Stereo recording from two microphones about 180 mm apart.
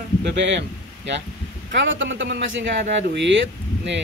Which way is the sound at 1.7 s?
90° right.